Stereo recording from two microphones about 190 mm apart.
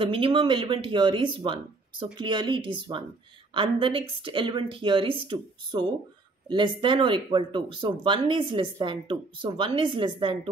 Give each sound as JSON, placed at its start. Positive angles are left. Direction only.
{"t": 0.0, "sound": "speech", "side_deg": -30}